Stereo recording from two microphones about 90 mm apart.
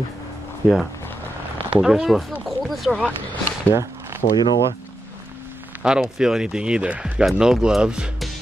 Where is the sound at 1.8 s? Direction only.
5° right (ahead or behind).